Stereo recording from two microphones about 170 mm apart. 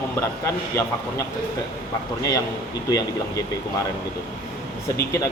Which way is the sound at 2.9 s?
20° left (ahead or behind).